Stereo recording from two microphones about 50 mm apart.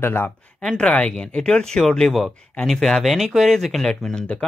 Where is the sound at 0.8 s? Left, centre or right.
Left.